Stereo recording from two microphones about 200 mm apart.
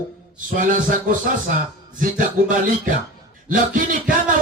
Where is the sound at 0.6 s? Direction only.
40° right (ahead or behind).